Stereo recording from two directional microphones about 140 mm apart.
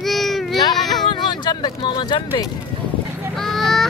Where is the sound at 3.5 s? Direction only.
Centre (ahead or behind).